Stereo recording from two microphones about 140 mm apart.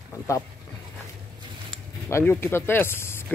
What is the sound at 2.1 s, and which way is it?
Speech, 15° left (ahead or behind).